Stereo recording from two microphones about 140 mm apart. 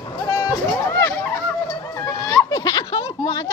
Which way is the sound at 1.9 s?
20° left (ahead or behind).